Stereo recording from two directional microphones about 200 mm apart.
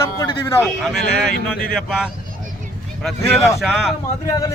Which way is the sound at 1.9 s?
5° right (ahead or behind).